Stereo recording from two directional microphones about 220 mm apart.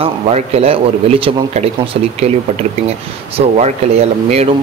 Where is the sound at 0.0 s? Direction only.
25° right (ahead or behind).